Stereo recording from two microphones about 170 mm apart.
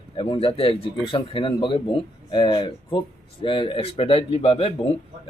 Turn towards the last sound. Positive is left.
turn(degrees=35)  # may be behind; listen again after turning